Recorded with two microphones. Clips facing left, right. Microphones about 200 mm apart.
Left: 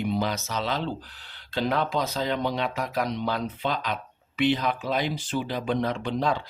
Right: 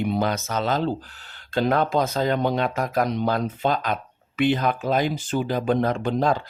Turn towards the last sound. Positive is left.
turn(degrees=-45)  # may be behind; listen again after turning